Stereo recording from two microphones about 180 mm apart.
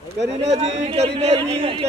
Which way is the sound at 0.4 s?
35° right (ahead or behind).